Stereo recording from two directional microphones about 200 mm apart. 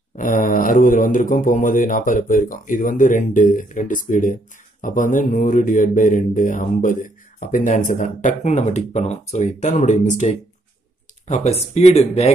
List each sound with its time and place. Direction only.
0.1 s speech: 40° left (ahead or behind)